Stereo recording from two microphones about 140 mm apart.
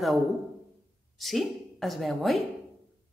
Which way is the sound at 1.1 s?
Centre (ahead or behind).